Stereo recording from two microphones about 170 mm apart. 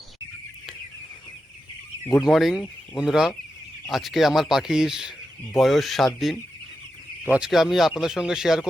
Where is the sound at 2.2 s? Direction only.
Centre (ahead or behind).